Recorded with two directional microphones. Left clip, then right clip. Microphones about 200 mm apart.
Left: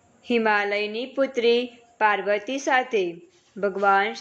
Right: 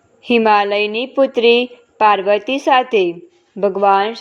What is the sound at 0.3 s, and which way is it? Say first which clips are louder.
A woman's voice: right 9 dB; 25° right (ahead or behind).